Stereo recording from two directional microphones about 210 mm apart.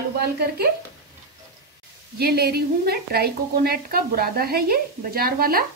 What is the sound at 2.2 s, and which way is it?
A woman's voice, 50° right (ahead or behind).